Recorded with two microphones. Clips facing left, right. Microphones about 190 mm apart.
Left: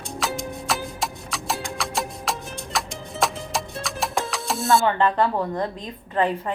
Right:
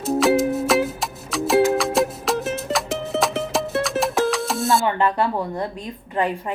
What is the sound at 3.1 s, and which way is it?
Music, 75° right (ahead or behind).